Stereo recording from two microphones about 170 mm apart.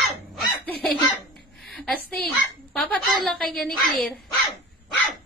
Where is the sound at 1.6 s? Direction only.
Centre (ahead or behind).